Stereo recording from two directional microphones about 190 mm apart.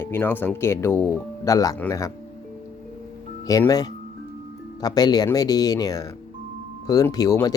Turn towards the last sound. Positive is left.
turn(degrees=20)  # may be behind; listen again after turning